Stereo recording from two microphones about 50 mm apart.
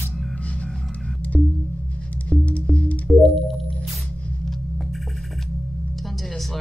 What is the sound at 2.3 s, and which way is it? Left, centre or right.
Music, left.